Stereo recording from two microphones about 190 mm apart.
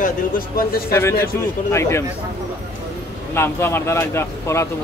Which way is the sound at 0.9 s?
15° left (ahead or behind).